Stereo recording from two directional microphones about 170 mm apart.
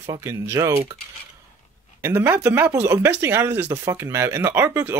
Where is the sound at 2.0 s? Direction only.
15° right (ahead or behind).